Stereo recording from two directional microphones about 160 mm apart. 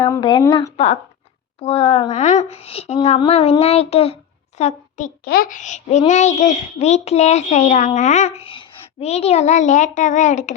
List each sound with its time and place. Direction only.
0.0 s a woman's voice: 25° left (ahead or behind); by 5.1 s 50° left (ahead or behind)
5.2 s a child's voice: 70° left (ahead or behind); by 10.5 s 50° left (ahead or behind)